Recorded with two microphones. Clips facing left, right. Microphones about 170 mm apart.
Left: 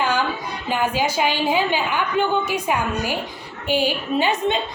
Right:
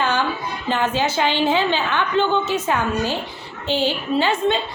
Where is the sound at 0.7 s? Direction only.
10° left (ahead or behind).